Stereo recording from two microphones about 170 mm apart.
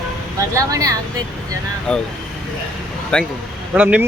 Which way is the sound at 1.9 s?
5° left (ahead or behind).